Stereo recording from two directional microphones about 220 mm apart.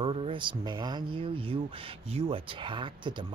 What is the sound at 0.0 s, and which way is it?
Speech, 25° right (ahead or behind).